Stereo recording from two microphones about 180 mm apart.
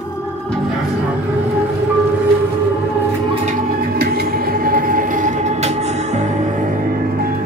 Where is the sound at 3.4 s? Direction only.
55° right (ahead or behind).